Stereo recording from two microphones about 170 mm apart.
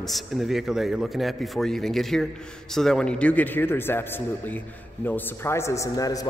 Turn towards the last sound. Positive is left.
turn(degrees=20)  # may be behind; listen again after turning